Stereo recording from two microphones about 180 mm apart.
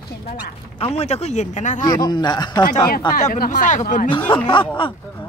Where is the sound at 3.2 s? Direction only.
45° left (ahead or behind).